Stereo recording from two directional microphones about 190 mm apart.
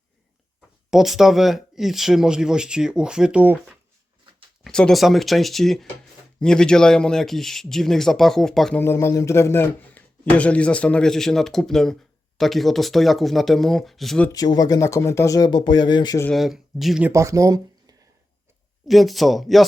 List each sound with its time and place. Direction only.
0.9 s a man's voice: centre (ahead or behind)
4.6 s a man's voice: 5° left (ahead or behind)
14.3 s speech: 20° left (ahead or behind)
16.2 s a man's voice: centre (ahead or behind)
17.1 s speech: 15° right (ahead or behind)
18.9 s a man's voice: centre (ahead or behind)